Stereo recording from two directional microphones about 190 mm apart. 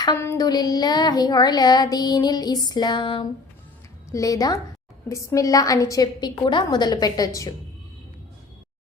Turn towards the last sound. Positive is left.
turn(degrees=20)  # may be behind; listen again after turning